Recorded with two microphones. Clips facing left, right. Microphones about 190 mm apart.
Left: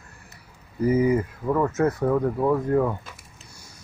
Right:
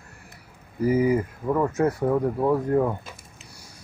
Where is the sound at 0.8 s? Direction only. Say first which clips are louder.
Left 1 dB; 25° left (ahead or behind).